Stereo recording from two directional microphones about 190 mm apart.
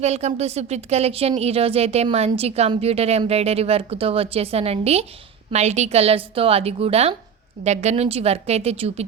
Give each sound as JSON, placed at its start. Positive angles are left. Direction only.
{"t": 0.0, "sound": "speech", "side_deg": -35}